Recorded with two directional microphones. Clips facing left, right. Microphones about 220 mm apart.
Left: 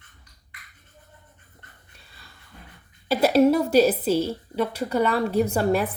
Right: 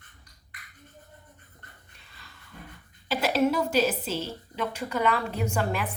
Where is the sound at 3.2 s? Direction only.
35° left (ahead or behind).